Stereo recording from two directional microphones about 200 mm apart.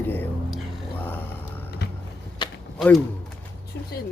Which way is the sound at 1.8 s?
60° left (ahead or behind).